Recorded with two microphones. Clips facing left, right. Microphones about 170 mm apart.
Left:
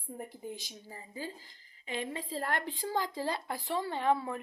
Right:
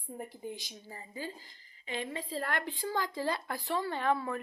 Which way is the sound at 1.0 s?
40° left (ahead or behind).